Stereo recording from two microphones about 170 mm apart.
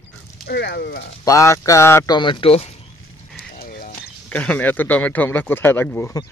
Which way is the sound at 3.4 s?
60° left (ahead or behind).